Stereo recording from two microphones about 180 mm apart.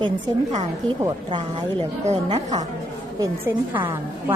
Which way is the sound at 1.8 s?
40° right (ahead or behind).